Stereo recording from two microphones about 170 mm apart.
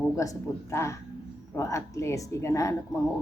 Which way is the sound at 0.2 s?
15° left (ahead or behind).